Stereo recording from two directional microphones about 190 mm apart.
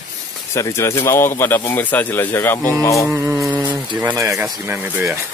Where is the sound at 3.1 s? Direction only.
15° right (ahead or behind).